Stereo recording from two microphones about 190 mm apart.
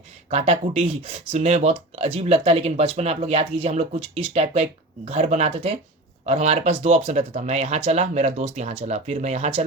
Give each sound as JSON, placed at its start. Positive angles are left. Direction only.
{"t": 0.3, "sound": "speech", "side_deg": -35}